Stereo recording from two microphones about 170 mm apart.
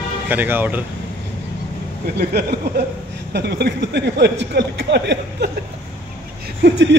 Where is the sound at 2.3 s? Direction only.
75° right (ahead or behind).